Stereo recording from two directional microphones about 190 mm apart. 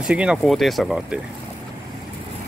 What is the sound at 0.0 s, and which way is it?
Speech, 5° right (ahead or behind).